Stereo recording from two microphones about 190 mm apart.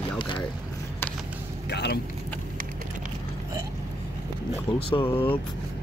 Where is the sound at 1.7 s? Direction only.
60° left (ahead or behind).